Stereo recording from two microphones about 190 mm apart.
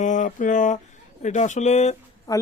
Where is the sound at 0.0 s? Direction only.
40° left (ahead or behind).